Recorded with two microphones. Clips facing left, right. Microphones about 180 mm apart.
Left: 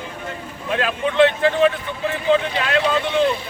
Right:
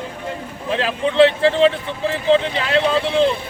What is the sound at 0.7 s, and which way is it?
A man's voice, 30° right (ahead or behind).